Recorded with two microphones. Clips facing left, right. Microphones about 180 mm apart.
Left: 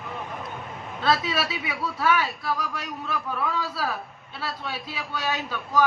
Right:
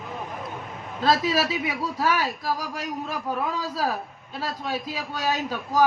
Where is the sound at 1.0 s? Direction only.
40° right (ahead or behind).